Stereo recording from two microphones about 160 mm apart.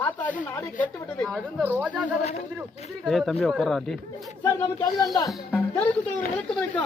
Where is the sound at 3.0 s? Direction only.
Centre (ahead or behind).